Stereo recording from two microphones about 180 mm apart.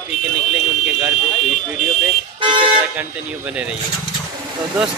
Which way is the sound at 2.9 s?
5° right (ahead or behind).